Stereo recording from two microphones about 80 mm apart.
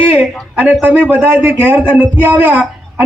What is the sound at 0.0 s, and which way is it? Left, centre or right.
A man's voice, right.